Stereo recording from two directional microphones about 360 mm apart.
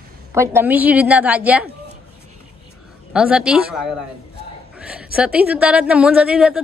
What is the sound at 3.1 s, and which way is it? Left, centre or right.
A woman's voice, centre.